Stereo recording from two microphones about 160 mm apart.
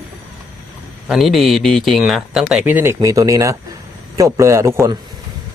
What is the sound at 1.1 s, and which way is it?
A man's voice, centre (ahead or behind).